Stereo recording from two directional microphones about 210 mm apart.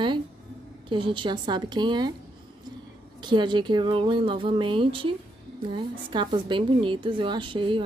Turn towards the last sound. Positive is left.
turn(degrees=-25)  # may be behind; listen again after turning